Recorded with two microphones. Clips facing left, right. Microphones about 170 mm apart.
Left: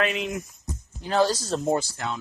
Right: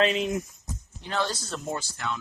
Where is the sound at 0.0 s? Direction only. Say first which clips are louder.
Right 2 dB; 35° right (ahead or behind).